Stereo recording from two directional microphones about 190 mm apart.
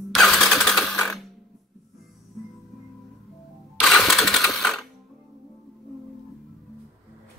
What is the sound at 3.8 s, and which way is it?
Sewing machine, centre (ahead or behind).